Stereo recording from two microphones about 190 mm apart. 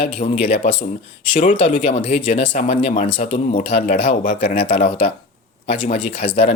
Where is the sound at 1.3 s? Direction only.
45° left (ahead or behind).